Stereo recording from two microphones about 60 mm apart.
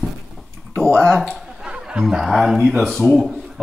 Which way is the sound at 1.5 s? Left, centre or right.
Centre.